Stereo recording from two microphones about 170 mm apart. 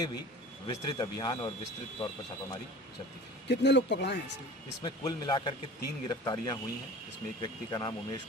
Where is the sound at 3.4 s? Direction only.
85° left.